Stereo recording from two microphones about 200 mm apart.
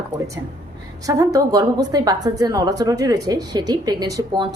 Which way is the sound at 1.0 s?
15° right (ahead or behind).